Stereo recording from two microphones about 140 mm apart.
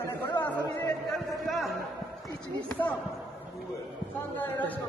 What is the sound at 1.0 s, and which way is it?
A man's voice, centre (ahead or behind).